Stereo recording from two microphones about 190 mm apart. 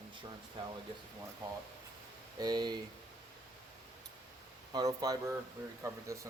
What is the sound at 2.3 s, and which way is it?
Speech, 20° right (ahead or behind).